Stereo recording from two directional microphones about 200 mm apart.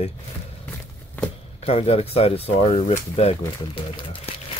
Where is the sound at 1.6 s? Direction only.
30° left (ahead or behind).